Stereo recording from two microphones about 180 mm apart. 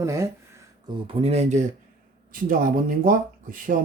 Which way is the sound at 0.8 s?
30° right (ahead or behind).